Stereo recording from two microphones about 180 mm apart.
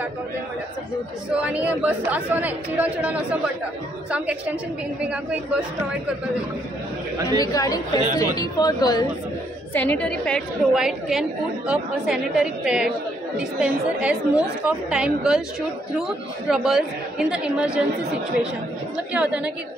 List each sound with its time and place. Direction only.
1.3 s speech: 5° right (ahead or behind)
7.3 s speech: 20° left (ahead or behind)
9.8 s a woman's voice: 10° left (ahead or behind)
19.1 s speech: 5° right (ahead or behind)